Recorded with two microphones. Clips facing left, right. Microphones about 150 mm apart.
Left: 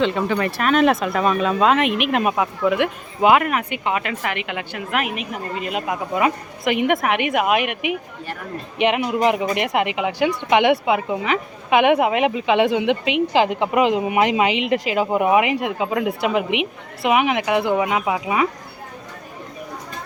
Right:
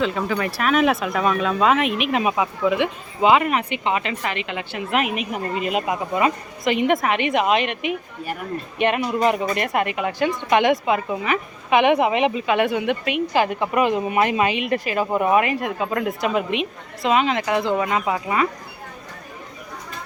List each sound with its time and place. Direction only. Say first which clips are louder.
0.0 s speech: left 3 dB; centre (ahead or behind)
5.3 s speech: right 3 dB; 5° right (ahead or behind)
6.8 s a woman's voice: even; 10° left (ahead or behind)
12.5 s a woman's voice: left 3 dB; 20° left (ahead or behind)